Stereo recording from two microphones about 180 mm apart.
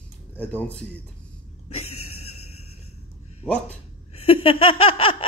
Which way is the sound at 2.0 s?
35° left (ahead or behind).